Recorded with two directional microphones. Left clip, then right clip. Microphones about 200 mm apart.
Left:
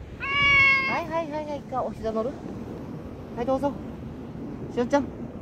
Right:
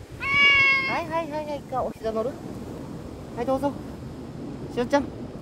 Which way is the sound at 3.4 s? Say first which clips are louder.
Even; 10° left (ahead or behind).